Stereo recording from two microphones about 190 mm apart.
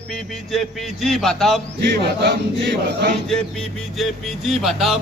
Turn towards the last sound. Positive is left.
turn(degrees=0)  # may be behind; listen again after turning